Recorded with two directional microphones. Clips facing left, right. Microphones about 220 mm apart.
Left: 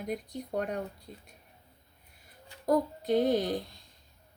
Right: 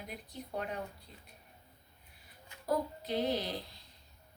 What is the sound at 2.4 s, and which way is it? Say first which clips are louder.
Speech: left 6 dB; 45° left (ahead or behind).